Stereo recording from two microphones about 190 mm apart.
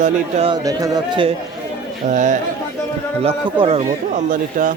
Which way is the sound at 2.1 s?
40° right (ahead or behind).